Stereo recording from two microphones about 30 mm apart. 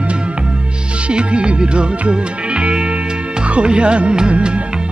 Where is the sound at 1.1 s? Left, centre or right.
Right.